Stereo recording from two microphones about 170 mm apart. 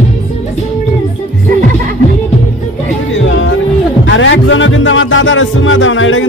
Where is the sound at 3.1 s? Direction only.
90° left.